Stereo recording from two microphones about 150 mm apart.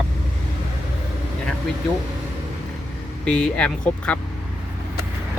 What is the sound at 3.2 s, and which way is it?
Speech, 5° left (ahead or behind).